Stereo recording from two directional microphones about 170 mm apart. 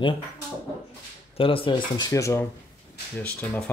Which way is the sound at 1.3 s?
30° left (ahead or behind).